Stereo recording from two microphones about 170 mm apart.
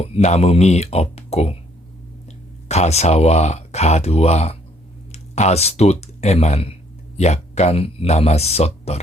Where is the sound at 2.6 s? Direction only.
40° left (ahead or behind).